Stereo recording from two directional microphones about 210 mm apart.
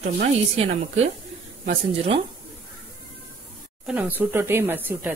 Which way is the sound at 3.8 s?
5° right (ahead or behind).